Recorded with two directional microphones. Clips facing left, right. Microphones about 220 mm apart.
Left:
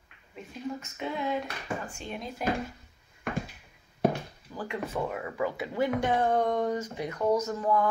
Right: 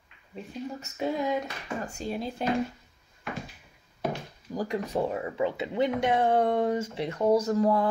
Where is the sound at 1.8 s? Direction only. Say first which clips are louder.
Right 5 dB; 35° right (ahead or behind).